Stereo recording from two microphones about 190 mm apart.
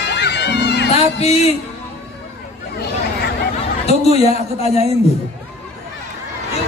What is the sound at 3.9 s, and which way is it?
Speech, 35° left (ahead or behind).